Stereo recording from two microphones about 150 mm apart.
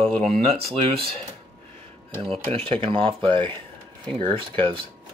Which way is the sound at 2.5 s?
40° right (ahead or behind).